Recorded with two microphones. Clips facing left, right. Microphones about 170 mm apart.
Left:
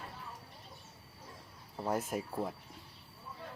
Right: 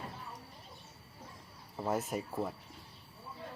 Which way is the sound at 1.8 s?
Centre (ahead or behind).